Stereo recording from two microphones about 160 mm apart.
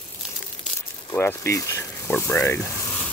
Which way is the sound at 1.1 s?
15° left (ahead or behind).